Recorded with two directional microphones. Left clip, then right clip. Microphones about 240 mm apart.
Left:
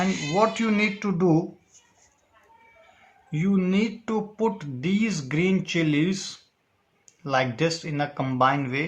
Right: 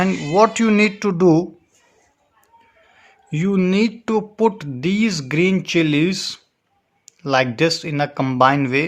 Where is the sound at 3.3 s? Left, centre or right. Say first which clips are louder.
Right 7 dB; right.